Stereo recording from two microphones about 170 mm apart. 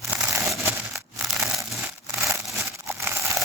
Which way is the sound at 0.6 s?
15° right (ahead or behind).